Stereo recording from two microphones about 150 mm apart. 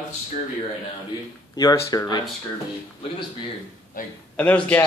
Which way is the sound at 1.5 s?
25° left (ahead or behind).